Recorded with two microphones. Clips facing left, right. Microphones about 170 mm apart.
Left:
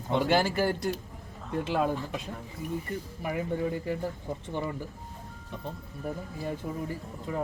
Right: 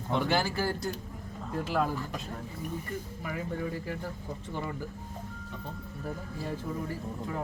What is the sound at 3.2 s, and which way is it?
Speech, 25° left (ahead or behind).